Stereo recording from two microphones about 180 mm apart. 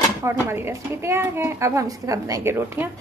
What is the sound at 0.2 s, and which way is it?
A woman's voice, 15° right (ahead or behind).